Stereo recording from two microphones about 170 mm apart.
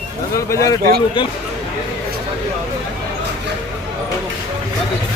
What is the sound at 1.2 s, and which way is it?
Speech, 30° left (ahead or behind).